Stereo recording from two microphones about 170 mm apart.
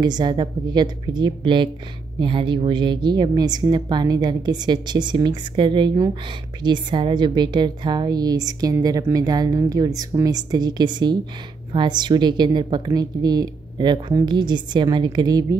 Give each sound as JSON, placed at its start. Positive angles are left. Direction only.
{"t": 0.0, "sound": "a woman's voice", "side_deg": -25}